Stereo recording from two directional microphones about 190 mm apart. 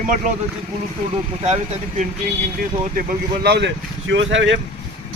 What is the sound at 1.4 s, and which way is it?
Speech, 35° right (ahead or behind).